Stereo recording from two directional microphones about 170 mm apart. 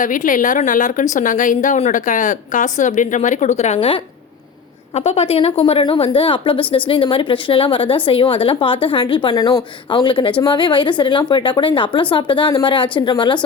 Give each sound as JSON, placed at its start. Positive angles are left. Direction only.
{"t": 0.0, "sound": "a woman's voice", "side_deg": 50}